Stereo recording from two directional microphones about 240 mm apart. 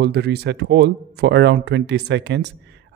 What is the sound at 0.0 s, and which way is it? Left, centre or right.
Speech, right.